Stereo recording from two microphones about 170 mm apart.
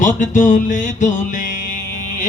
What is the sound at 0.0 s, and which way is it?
Music, 50° left (ahead or behind).